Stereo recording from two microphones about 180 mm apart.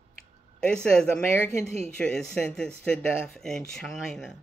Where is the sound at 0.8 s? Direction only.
5° left (ahead or behind).